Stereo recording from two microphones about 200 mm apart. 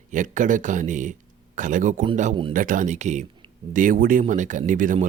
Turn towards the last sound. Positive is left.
turn(degrees=-40)  # may be behind; listen again after turning